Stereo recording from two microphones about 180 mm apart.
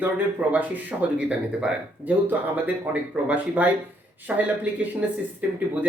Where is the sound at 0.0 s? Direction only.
10° right (ahead or behind).